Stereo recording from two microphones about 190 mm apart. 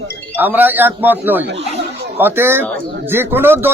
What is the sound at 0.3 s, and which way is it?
Speech, 10° right (ahead or behind).